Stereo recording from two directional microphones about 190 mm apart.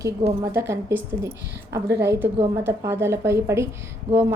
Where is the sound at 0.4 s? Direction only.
15° right (ahead or behind).